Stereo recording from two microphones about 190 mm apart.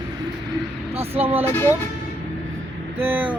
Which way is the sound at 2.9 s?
10° right (ahead or behind).